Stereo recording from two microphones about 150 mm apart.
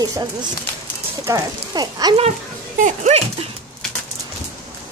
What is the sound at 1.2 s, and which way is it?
Speech, 25° right (ahead or behind).